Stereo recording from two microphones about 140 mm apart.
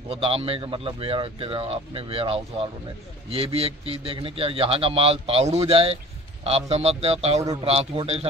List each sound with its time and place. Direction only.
0.1 s a man's voice: 45° right (ahead or behind)